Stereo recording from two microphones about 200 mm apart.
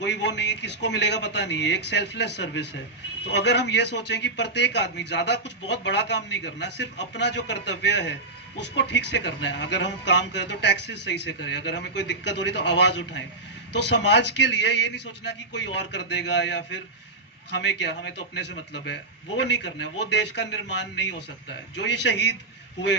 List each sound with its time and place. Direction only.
0.0 s a man's voice: 60° left (ahead or behind)